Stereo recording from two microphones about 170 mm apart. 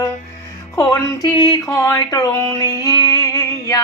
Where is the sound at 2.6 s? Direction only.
20° left (ahead or behind).